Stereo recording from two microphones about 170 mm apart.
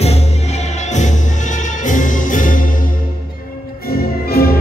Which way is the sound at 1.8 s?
50° left (ahead or behind).